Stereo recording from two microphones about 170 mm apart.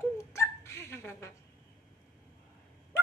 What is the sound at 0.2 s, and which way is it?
Hiccup, 15° left (ahead or behind).